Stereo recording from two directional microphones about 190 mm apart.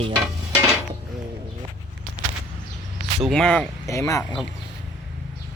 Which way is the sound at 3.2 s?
5° left (ahead or behind).